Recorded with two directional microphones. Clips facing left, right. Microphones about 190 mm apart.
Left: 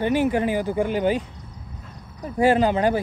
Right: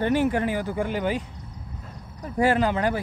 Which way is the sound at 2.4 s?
20° left (ahead or behind).